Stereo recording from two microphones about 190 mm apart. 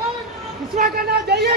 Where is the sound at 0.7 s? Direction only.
50° right (ahead or behind).